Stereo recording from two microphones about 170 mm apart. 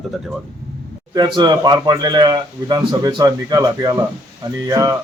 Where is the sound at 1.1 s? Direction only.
25° right (ahead or behind).